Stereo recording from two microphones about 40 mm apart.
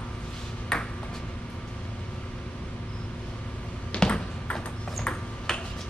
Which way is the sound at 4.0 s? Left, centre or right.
Left.